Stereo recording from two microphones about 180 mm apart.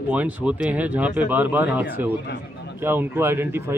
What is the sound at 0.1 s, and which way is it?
Speech, 10° right (ahead or behind).